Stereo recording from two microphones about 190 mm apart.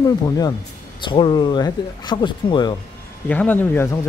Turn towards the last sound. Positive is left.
turn(degrees=10)  # may be behind; listen again after turning